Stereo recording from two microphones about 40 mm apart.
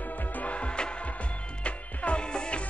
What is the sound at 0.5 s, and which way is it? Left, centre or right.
Music, left.